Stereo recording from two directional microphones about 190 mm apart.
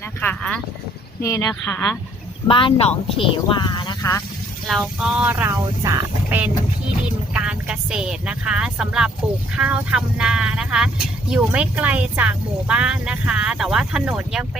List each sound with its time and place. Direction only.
0.2 s speech: 5° left (ahead or behind)
2.5 s speech: 25° left (ahead or behind)
4.6 s speech: centre (ahead or behind)